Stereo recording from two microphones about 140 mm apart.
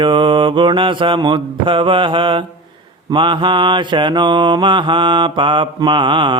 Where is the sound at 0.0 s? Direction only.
35° right (ahead or behind).